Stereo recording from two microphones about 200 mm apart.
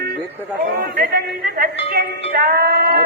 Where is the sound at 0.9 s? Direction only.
50° right (ahead or behind).